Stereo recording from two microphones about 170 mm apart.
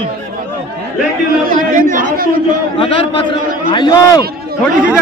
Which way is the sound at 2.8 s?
30° left (ahead or behind).